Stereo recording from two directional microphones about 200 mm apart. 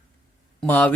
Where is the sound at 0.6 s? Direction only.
10° left (ahead or behind).